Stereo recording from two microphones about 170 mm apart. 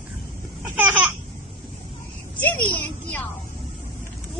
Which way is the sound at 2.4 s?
10° left (ahead or behind).